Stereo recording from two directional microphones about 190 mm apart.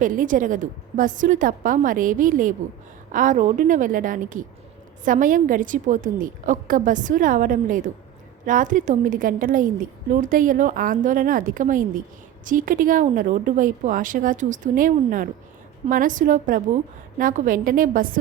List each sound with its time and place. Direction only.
0.0 s a woman's voice: 45° right (ahead or behind)